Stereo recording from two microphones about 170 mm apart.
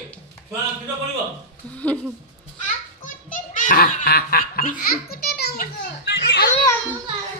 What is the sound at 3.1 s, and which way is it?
Belly laugh, 50° left (ahead or behind).